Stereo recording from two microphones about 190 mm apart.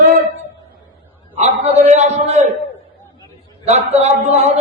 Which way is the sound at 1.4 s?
35° right (ahead or behind).